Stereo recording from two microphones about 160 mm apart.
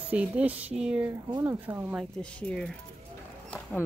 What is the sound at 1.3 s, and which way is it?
Speech, 15° right (ahead or behind).